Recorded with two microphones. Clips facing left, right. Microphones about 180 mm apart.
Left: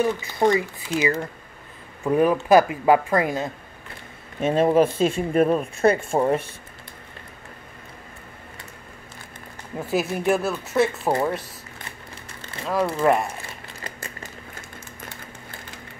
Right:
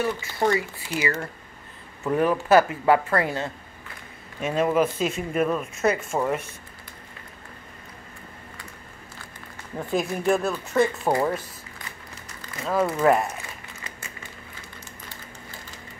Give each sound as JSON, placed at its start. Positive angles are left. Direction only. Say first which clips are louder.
{"t": 0.0, "sound": "speech", "louder": "left 4 dB", "side_deg": 20}
{"t": 4.4, "sound": "speech", "louder": "left 4 dB", "side_deg": 30}
{"t": 9.8, "sound": "speech", "louder": "left 2 dB", "side_deg": 5}
{"t": 12.4, "sound": "a sound", "louder": "even", "side_deg": 30}
{"t": 13.0, "sound": "speech", "louder": "even", "side_deg": 0}